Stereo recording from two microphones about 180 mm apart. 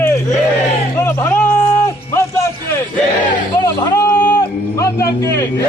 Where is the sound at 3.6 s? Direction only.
20° left (ahead or behind).